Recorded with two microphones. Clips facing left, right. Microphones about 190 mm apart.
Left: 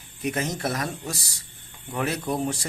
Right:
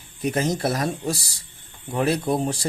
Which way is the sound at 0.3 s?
30° right (ahead or behind).